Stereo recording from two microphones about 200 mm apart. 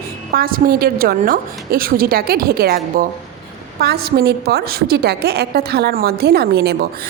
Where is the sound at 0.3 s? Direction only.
45° right (ahead or behind).